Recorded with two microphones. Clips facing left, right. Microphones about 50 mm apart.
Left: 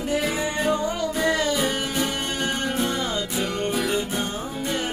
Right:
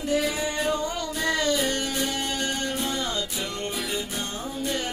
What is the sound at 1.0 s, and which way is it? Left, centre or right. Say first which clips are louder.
Music: left 4 dB; centre.